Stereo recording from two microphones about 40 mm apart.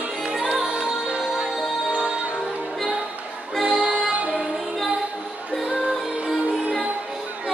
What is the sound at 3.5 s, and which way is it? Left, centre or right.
Music, centre.